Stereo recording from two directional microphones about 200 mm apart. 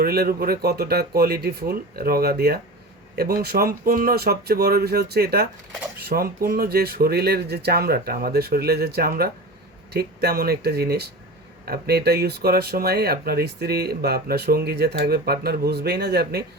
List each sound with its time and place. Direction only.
0.0 s speech: 50° right (ahead or behind)